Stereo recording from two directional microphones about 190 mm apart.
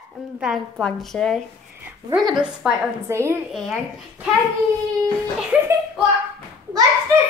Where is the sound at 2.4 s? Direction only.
5° right (ahead or behind).